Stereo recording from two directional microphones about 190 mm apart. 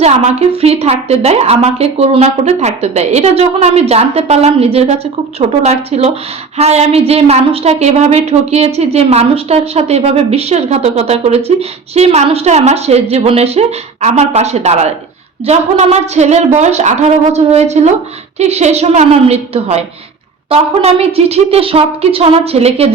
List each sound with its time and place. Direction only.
0.0 s a woman's voice: 35° right (ahead or behind)